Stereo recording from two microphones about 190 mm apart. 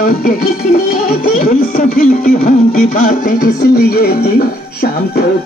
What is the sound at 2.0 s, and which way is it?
Music, 45° left (ahead or behind).